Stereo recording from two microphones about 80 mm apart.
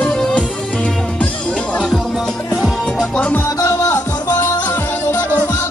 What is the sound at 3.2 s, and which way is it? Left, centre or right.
Music, centre.